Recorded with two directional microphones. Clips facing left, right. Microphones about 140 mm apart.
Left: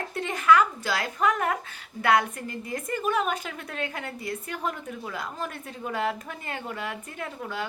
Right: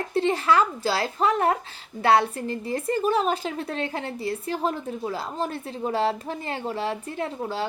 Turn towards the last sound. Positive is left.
turn(degrees=-30)  # may be behind; listen again after turning